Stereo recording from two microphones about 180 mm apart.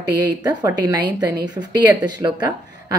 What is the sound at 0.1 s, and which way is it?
Speech, 20° right (ahead or behind).